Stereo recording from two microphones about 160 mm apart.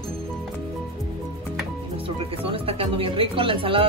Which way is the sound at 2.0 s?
35° right (ahead or behind).